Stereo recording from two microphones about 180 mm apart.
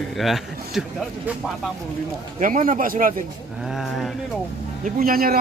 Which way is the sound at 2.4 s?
50° right (ahead or behind).